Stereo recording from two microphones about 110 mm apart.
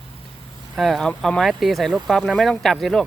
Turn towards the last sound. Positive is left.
turn(degrees=5)  # may be behind; listen again after turning